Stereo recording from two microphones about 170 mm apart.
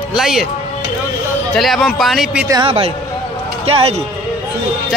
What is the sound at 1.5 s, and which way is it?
Speech, centre (ahead or behind).